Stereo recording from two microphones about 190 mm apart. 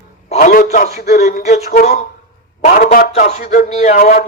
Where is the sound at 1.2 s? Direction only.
50° left (ahead or behind).